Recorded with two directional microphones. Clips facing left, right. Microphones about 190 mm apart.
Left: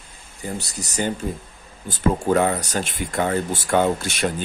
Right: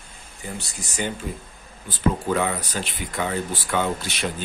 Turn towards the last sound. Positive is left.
turn(degrees=50)  # may be behind; listen again after turning